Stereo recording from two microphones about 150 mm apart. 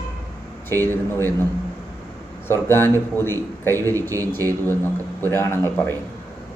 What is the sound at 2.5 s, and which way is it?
A man's voice, 15° left (ahead or behind).